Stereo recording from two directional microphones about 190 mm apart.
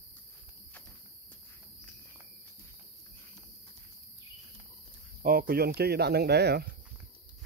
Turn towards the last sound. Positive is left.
turn(degrees=-60)  # may be behind; listen again after turning